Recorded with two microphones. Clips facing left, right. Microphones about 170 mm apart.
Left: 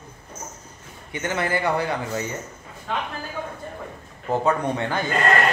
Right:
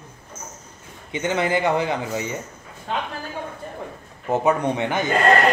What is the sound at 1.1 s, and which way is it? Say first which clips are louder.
Speech: right 3 dB; 20° right (ahead or behind).